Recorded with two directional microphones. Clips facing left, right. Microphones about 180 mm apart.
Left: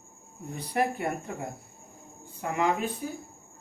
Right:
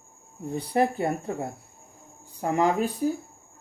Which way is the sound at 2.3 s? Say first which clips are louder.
Right 4 dB; 40° right (ahead or behind).